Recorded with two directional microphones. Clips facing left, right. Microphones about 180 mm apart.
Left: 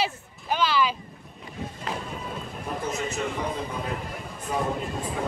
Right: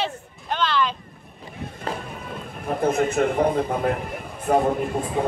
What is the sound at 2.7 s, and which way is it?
A man's voice, 55° right (ahead or behind).